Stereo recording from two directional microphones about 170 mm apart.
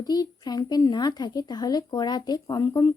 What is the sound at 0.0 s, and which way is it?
A woman's voice, 25° left (ahead or behind).